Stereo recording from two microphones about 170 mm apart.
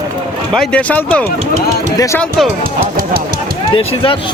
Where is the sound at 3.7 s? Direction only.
35° left (ahead or behind).